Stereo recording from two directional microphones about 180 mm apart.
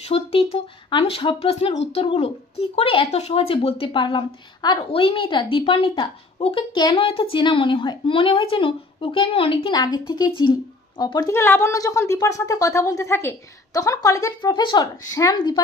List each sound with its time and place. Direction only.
0.1 s speech: 35° left (ahead or behind)